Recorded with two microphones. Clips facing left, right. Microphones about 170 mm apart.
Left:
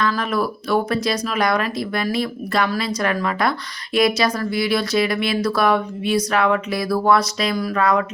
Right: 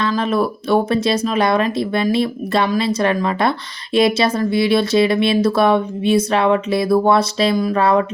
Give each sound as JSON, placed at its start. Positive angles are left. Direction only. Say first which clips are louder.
{"t": 0.0, "sound": "speech", "louder": "right 3 dB", "side_deg": -25}